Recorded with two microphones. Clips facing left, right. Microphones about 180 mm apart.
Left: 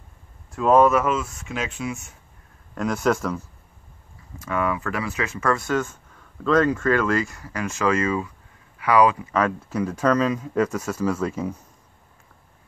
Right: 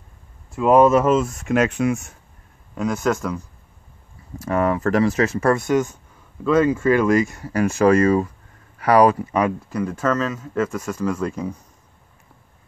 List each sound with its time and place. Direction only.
0.6 s speech: 10° right (ahead or behind)
1.0 s speech: 45° right (ahead or behind)
2.7 s speech: centre (ahead or behind)
4.4 s speech: 40° right (ahead or behind)
5.5 s speech: 20° right (ahead or behind)
7.3 s speech: 30° right (ahead or behind)
9.6 s speech: 5° left (ahead or behind)